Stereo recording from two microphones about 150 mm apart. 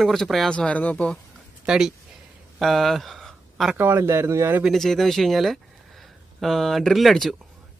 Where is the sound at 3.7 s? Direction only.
15° right (ahead or behind).